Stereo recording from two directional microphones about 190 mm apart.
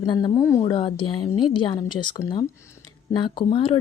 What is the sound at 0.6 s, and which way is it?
Speech, 25° left (ahead or behind).